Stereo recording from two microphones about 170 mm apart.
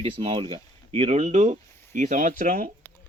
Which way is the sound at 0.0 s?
35° right (ahead or behind).